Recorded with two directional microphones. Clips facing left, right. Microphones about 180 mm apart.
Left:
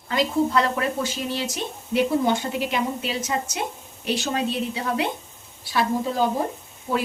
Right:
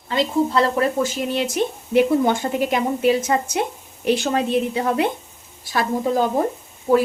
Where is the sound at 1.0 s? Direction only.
55° right (ahead or behind).